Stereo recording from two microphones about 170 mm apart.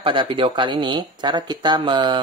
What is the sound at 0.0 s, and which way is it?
Speech, 30° right (ahead or behind).